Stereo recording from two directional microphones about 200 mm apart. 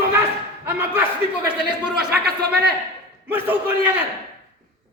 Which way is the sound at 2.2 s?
50° right (ahead or behind).